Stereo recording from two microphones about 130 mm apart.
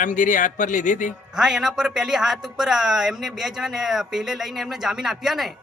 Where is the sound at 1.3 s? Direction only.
5° right (ahead or behind).